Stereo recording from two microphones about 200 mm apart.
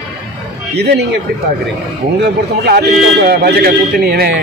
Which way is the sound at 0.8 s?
55° right (ahead or behind).